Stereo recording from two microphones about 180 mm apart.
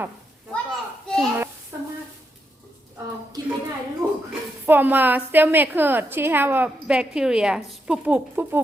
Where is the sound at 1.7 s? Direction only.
15° right (ahead or behind).